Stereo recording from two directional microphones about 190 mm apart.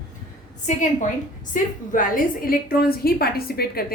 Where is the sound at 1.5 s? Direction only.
45° left (ahead or behind).